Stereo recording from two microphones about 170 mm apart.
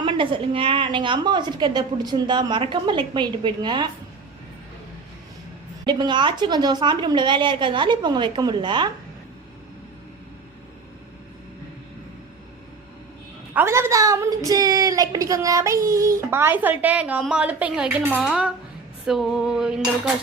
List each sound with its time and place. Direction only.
0.0 s a woman's voice: 30° right (ahead or behind)
5.8 s a woman's voice: 25° right (ahead or behind)
13.5 s speech: 15° right (ahead or behind)
19.0 s a sound: centre (ahead or behind)